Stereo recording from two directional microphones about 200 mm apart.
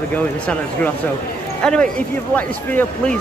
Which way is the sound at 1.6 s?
5° left (ahead or behind).